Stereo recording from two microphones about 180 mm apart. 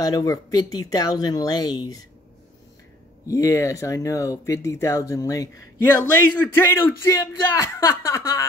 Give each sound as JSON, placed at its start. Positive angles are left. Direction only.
{"t": 0.0, "sound": "speech", "side_deg": 20}
{"t": 3.3, "sound": "speech", "side_deg": 15}